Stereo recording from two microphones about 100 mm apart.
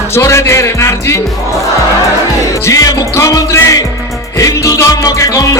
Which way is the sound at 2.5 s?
35° left (ahead or behind).